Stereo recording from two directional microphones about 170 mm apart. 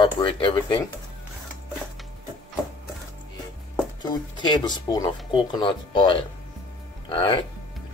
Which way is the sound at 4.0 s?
25° left (ahead or behind).